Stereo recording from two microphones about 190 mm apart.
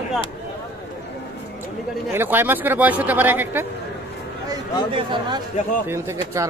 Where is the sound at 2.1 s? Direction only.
10° right (ahead or behind).